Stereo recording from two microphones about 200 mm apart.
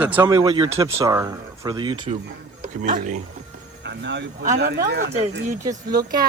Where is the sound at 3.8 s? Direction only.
60° right (ahead or behind).